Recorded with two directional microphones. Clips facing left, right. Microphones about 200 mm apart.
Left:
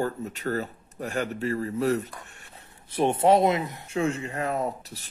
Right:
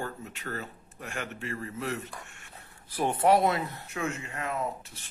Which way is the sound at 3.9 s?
30° left (ahead or behind).